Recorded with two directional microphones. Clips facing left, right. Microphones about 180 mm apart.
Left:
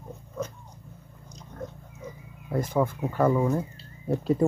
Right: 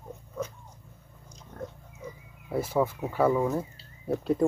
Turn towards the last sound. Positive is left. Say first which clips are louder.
# left 2 dB
turn(degrees=0)  # may be behind; listen again after turning